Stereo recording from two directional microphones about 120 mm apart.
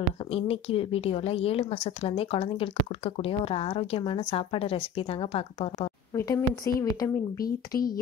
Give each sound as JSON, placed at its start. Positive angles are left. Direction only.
{"t": 0.3, "sound": "a woman's voice", "side_deg": 55}
{"t": 6.1, "sound": "a woman's voice", "side_deg": 25}